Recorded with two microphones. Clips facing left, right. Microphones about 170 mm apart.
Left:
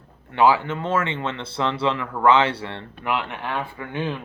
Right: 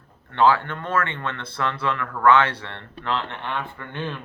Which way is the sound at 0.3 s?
10° left (ahead or behind).